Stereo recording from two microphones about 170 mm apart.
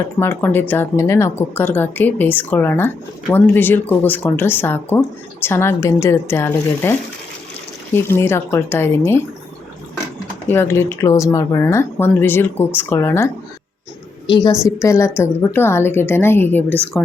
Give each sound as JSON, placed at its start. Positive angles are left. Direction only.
{"t": 0.2, "sound": "speech", "side_deg": 15}
{"t": 7.9, "sound": "speech", "side_deg": 15}
{"t": 10.4, "sound": "a woman's voice", "side_deg": 10}